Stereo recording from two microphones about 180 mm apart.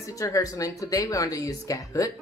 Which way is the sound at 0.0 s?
20° left (ahead or behind).